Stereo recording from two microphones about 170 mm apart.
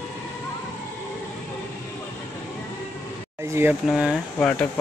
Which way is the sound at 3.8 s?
5° right (ahead or behind).